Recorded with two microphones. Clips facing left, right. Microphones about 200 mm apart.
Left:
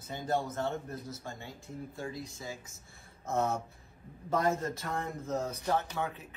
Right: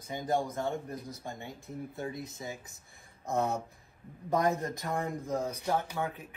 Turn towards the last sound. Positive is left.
turn(degrees=-10)  # may be behind; listen again after turning